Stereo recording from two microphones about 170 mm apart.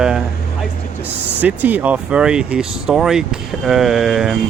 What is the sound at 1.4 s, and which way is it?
Speech, 10° right (ahead or behind).